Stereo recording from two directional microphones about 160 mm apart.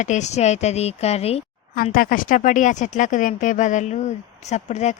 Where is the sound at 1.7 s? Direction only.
65° left (ahead or behind).